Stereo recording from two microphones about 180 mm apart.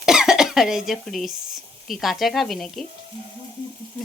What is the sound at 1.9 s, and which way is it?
Speech, centre (ahead or behind).